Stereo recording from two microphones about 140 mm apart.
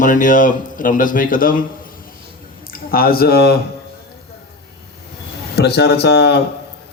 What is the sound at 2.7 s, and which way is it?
Speech, 90° left.